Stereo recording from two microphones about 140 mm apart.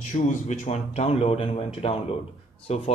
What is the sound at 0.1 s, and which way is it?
Speech, 55° left (ahead or behind).